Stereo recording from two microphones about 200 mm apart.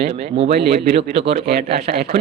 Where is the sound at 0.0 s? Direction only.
30° right (ahead or behind).